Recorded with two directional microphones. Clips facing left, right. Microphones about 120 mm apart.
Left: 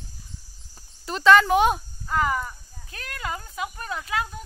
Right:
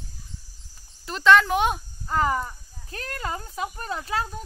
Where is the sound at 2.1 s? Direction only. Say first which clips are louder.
Right 1 dB; 30° right (ahead or behind).